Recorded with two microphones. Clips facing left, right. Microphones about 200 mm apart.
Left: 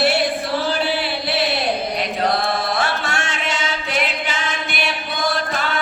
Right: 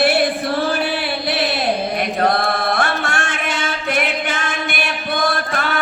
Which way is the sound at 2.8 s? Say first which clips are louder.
Right 2 dB; 50° right (ahead or behind).